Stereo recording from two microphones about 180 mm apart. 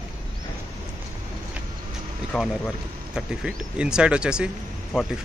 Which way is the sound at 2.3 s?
Centre (ahead or behind).